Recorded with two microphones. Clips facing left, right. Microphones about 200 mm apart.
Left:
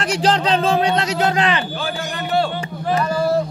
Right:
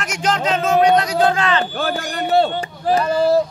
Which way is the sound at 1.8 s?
55° right (ahead or behind).